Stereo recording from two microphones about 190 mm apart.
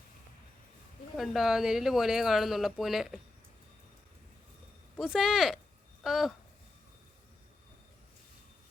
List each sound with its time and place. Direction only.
1.1 s speech: centre (ahead or behind)
4.9 s speech: centre (ahead or behind)